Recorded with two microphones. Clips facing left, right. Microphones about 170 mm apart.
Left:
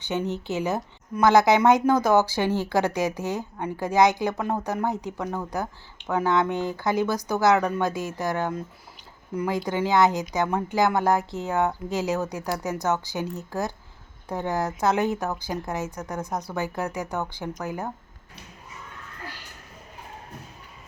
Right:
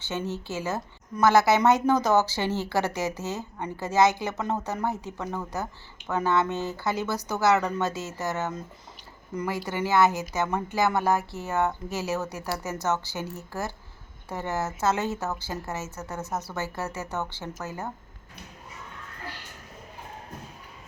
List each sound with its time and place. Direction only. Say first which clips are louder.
0.0 s a woman's voice: left 4 dB; 15° left (ahead or behind)